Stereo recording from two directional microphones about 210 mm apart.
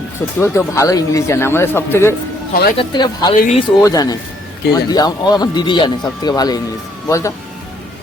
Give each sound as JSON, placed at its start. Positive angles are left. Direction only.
{"t": 0.3, "sound": "speech", "side_deg": 15}
{"t": 3.3, "sound": "speech", "side_deg": 40}
{"t": 3.8, "sound": "speech", "side_deg": 15}